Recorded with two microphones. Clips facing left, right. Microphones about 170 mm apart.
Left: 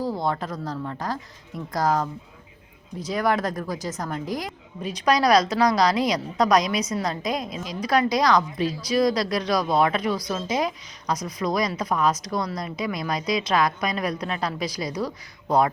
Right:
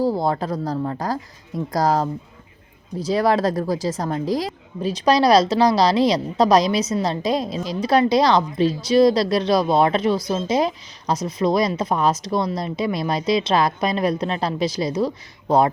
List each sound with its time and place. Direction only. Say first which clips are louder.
0.0 s a woman's voice: right 6 dB; 35° right (ahead or behind)